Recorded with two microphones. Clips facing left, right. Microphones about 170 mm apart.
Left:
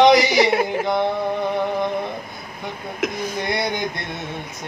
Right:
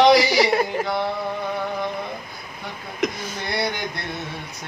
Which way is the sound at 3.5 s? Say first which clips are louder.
Even; 20° left (ahead or behind).